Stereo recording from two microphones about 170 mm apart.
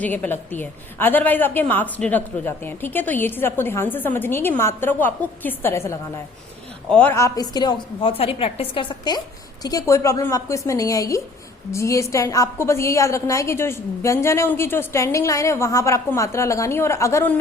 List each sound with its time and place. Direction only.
0.0 s a woman's voice: 10° left (ahead or behind)